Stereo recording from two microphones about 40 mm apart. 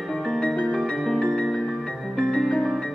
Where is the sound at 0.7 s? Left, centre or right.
Centre.